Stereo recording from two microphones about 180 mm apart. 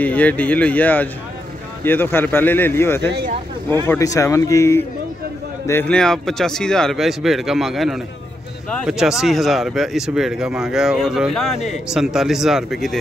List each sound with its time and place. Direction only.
0.0 s speech: 10° left (ahead or behind)